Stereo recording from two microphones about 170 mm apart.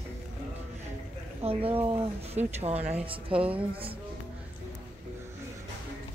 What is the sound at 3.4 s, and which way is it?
Speech, 5° right (ahead or behind).